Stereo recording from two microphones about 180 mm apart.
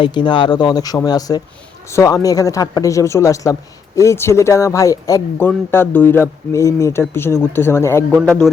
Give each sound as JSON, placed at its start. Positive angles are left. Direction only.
{"t": 0.0, "sound": "speech", "side_deg": 25}
{"t": 8.1, "sound": "a man's voice", "side_deg": 5}